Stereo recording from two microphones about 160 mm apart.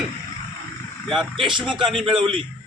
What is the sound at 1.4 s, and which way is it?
A man's voice, 30° right (ahead or behind).